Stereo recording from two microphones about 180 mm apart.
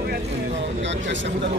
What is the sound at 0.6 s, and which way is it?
Speech, 85° right.